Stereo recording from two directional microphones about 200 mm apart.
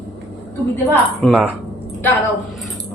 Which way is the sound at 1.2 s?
5° right (ahead or behind).